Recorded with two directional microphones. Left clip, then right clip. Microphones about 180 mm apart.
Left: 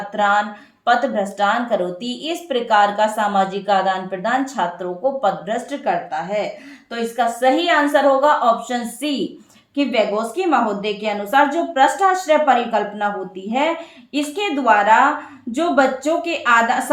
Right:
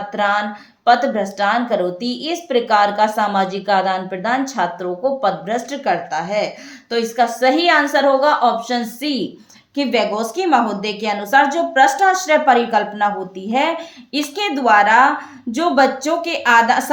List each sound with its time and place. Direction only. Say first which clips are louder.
0.1 s a woman's voice: left 1 dB; 35° right (ahead or behind)
14.1 s a woman's voice: right 1 dB; 45° right (ahead or behind)